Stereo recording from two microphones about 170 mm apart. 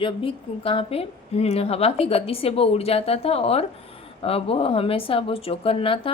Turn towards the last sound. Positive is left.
turn(degrees=30)  # may be behind; listen again after turning